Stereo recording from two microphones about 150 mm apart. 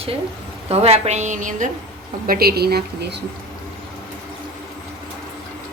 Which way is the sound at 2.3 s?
90° right.